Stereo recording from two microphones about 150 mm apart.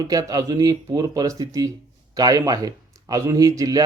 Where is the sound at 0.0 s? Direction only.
25° right (ahead or behind).